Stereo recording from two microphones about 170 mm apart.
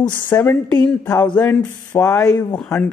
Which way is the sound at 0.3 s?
15° left (ahead or behind).